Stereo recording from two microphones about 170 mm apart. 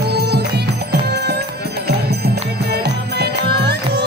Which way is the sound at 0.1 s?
70° right (ahead or behind).